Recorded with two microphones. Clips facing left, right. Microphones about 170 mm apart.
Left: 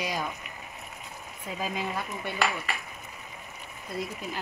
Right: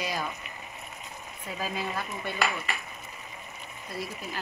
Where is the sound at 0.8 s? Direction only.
5° left (ahead or behind).